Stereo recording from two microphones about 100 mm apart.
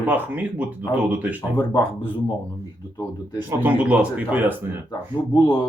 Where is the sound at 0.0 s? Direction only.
15° right (ahead or behind).